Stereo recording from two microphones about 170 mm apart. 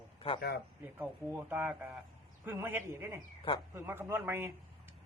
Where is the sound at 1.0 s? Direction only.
10° right (ahead or behind).